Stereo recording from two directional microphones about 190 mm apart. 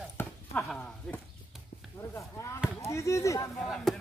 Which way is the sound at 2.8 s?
15° left (ahead or behind).